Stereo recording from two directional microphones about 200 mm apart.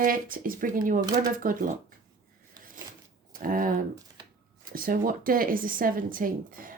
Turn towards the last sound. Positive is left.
turn(degrees=-45)  # may be behind; listen again after turning